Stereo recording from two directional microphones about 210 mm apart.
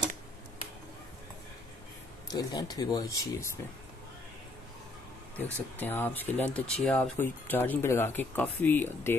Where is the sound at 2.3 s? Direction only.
20° left (ahead or behind).